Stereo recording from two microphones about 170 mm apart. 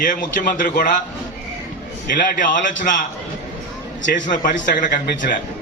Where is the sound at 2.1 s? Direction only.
50° left (ahead or behind).